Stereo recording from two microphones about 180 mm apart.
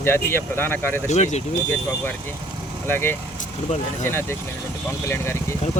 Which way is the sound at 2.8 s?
10° left (ahead or behind).